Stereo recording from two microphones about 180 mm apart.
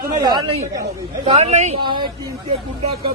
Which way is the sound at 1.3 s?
40° right (ahead or behind).